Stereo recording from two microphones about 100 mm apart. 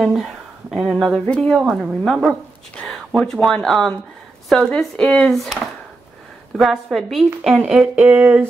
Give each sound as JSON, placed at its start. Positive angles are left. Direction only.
{"t": 0.0, "sound": "speech", "side_deg": 0}
{"t": 2.0, "sound": "speech", "side_deg": -10}
{"t": 2.7, "sound": "a sound", "side_deg": 10}
{"t": 3.1, "sound": "speech", "side_deg": 0}